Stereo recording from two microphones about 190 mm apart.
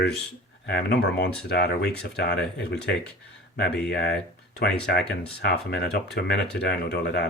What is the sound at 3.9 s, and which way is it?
Speech, 60° left (ahead or behind).